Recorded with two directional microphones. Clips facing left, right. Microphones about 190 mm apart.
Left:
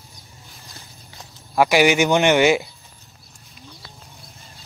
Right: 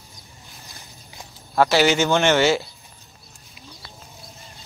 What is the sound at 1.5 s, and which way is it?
Speech, 15° left (ahead or behind).